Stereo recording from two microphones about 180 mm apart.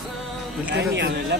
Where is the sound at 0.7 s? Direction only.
65° right (ahead or behind).